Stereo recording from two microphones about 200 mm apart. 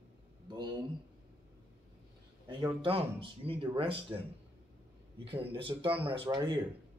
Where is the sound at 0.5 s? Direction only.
20° right (ahead or behind).